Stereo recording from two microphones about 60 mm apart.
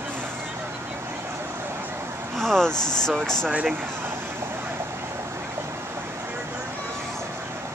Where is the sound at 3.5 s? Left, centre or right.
Right.